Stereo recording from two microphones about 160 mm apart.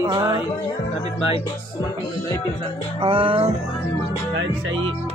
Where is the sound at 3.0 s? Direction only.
35° right (ahead or behind).